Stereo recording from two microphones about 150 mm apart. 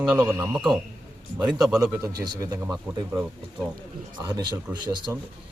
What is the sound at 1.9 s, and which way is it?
Speech, 25° right (ahead or behind).